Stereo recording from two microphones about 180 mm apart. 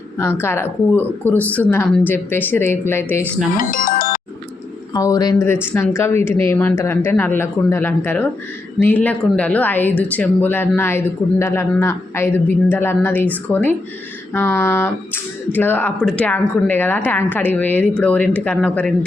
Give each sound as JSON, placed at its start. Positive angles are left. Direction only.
{"t": 0.2, "sound": "speech", "side_deg": 10}
{"t": 3.6, "sound": "music", "side_deg": 50}
{"t": 4.9, "sound": "speech", "side_deg": 20}